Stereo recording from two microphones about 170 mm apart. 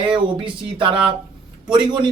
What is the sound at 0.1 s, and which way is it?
A man's voice, 30° right (ahead or behind).